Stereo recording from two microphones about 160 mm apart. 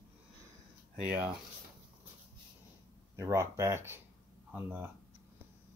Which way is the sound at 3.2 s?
15° right (ahead or behind).